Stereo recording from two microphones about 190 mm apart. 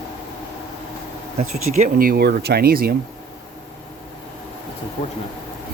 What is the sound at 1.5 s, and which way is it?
Speech, 40° right (ahead or behind).